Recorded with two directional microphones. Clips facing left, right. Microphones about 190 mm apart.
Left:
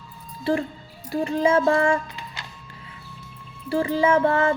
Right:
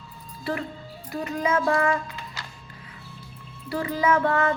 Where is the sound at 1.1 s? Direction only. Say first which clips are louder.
Left 5 dB; 30° left (ahead or behind).